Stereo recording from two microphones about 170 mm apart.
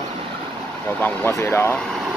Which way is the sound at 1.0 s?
15° left (ahead or behind).